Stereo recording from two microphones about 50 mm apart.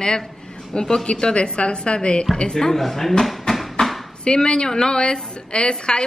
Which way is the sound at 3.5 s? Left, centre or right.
Centre.